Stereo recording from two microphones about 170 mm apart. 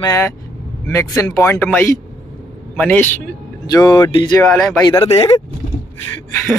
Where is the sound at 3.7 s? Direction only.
25° left (ahead or behind).